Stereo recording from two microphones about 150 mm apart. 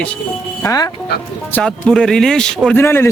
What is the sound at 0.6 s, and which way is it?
Speech, 25° left (ahead or behind).